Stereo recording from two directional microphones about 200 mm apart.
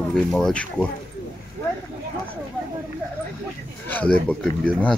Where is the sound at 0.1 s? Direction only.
Centre (ahead or behind).